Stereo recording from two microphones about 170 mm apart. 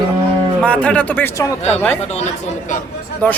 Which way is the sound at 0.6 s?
5° left (ahead or behind).